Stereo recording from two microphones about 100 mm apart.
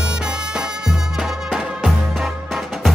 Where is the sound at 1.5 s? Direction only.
5° right (ahead or behind).